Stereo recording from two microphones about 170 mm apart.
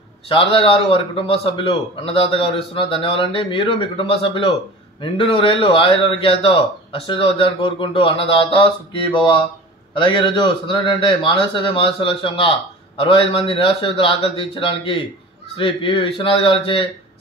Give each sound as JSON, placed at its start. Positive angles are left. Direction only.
{"t": 0.3, "sound": "a man's voice", "side_deg": 30}